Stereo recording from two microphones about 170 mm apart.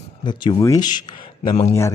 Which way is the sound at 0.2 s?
25° left (ahead or behind).